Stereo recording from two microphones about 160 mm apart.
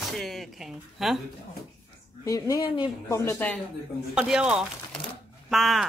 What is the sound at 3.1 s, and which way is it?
Speech, 15° left (ahead or behind).